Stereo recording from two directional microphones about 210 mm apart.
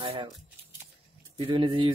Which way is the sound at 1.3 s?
25° right (ahead or behind).